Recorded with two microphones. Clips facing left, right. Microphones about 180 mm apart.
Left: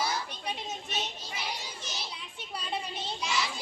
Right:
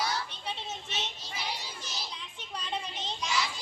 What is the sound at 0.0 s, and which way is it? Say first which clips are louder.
Children playing: left 1 dB; 10° left (ahead or behind).